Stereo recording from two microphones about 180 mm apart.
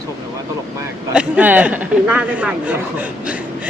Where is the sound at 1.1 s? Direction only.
5° right (ahead or behind).